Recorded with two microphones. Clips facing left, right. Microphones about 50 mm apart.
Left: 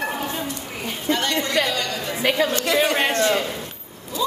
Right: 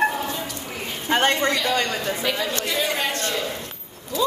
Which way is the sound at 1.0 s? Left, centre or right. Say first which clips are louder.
Right 3 dB; right.